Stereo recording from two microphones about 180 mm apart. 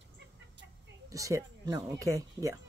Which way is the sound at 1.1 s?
20° right (ahead or behind).